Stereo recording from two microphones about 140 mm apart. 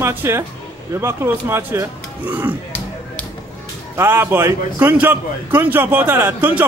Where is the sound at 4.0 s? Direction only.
15° right (ahead or behind).